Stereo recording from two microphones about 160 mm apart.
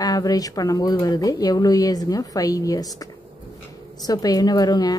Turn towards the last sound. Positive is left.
turn(degrees=25)  # may be behind; listen again after turning